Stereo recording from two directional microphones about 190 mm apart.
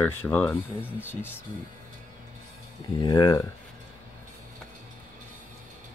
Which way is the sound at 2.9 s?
20° left (ahead or behind).